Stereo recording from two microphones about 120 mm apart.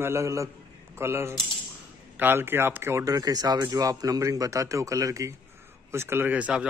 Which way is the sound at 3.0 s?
30° right (ahead or behind).